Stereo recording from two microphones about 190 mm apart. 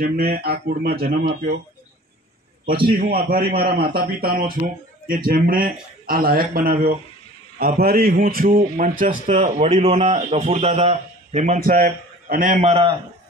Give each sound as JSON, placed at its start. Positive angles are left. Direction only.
{"t": 0.0, "sound": "speech", "side_deg": -55}
{"t": 2.9, "sound": "a man's voice", "side_deg": -50}